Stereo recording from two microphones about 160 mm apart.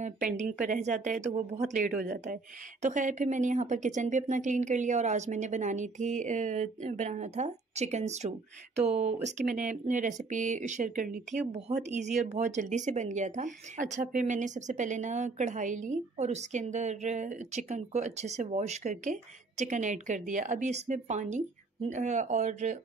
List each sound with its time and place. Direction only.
0.0 s speech: 50° right (ahead or behind)
1.9 s speech: 55° right (ahead or behind)